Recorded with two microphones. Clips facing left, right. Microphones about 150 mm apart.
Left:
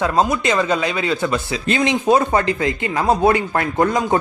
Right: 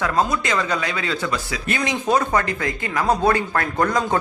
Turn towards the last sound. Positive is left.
turn(degrees=20)  # may be behind; listen again after turning